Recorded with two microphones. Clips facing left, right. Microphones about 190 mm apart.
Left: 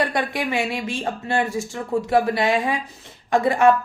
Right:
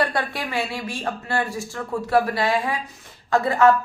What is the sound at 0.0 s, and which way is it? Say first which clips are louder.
A woman's voice: left 2 dB; 20° left (ahead or behind).